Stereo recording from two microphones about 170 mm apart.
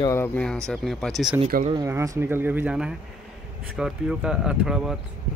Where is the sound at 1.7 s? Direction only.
20° right (ahead or behind).